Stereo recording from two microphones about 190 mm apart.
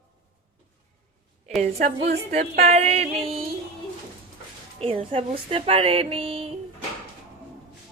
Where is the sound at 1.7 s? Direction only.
55° right (ahead or behind).